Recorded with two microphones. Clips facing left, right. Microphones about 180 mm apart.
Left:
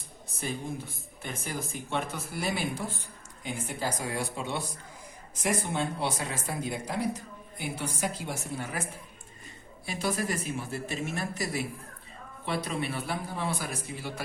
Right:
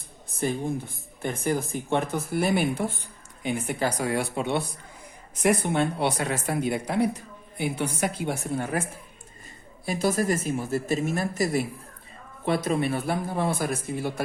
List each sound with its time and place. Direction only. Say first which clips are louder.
0.3 s speech: right 7 dB; 50° right (ahead or behind)
3.4 s speech: right 7 dB; 70° right (ahead or behind)
9.8 s speech: right 7 dB; 45° right (ahead or behind)